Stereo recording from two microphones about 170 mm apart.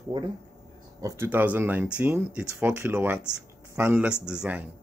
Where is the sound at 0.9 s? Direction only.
15° right (ahead or behind).